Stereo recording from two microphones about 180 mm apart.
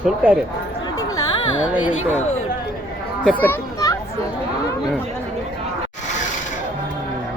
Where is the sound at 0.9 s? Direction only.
20° left (ahead or behind).